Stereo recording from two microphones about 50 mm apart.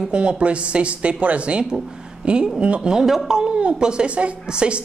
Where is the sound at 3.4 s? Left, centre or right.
Centre.